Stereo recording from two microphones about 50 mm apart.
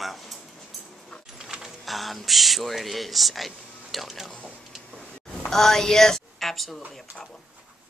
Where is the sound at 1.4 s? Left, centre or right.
Centre.